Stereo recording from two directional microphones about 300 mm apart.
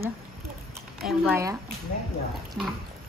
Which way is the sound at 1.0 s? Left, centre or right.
Centre.